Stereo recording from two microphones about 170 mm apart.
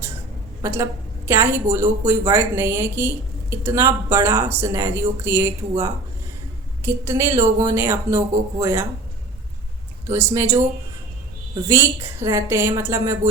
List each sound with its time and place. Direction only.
0.6 s a woman's voice: 15° right (ahead or behind)
10.1 s speech: 15° right (ahead or behind)
11.7 s speech: 15° right (ahead or behind)